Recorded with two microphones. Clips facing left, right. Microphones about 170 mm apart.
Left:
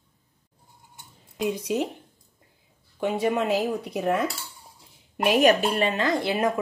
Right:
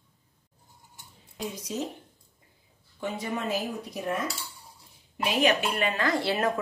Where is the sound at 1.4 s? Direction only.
65° left (ahead or behind).